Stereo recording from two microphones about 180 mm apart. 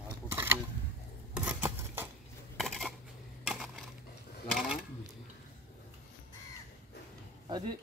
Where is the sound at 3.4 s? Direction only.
Centre (ahead or behind).